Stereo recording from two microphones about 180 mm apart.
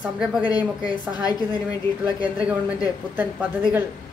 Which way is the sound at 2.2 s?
10° right (ahead or behind).